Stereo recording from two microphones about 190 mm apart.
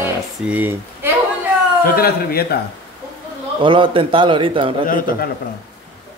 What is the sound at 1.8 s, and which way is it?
Speech, 55° left (ahead or behind).